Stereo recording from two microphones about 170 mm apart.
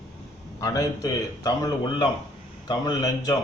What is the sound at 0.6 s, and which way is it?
A man's voice, 20° left (ahead or behind).